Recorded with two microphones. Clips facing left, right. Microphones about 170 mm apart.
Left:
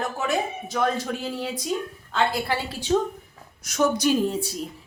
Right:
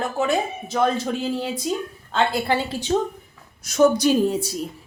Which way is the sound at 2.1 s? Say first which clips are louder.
Right 3 dB; 25° right (ahead or behind).